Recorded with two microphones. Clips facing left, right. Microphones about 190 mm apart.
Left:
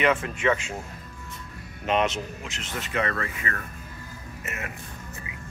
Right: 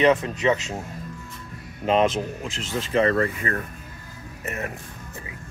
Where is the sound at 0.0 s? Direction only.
35° right (ahead or behind).